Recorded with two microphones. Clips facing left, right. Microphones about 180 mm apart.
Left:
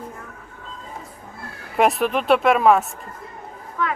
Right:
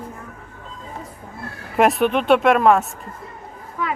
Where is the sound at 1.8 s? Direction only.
Centre (ahead or behind).